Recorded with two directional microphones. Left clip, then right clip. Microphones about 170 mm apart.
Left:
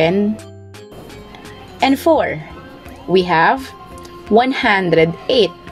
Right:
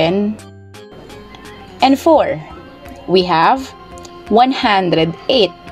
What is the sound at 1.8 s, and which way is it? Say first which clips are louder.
Speech: right 3 dB; 15° right (ahead or behind).